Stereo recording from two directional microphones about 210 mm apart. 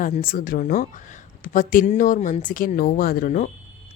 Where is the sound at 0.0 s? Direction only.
40° left (ahead or behind).